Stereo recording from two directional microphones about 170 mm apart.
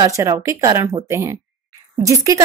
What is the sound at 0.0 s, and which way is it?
A woman's voice, 15° right (ahead or behind).